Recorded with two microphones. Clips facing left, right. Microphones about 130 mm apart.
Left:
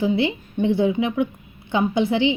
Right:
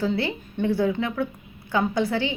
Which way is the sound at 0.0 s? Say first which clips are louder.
Left 4 dB; 20° left (ahead or behind).